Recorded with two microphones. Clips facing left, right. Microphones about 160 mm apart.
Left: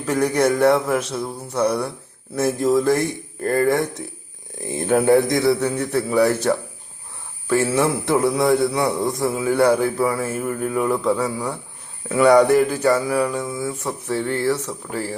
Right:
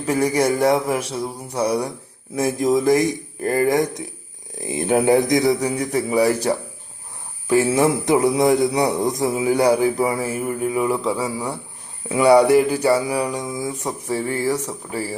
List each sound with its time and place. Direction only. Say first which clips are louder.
0.0 s a man's voice: even; 10° right (ahead or behind)